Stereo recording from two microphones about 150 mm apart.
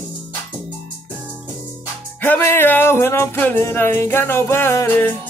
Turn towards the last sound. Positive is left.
turn(degrees=15)  # may be behind; listen again after turning